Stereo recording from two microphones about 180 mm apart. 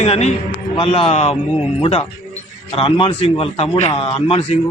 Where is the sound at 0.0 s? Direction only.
35° left (ahead or behind).